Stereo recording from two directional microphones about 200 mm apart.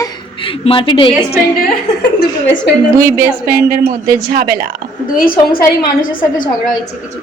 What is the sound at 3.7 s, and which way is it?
Speech, 45° right (ahead or behind).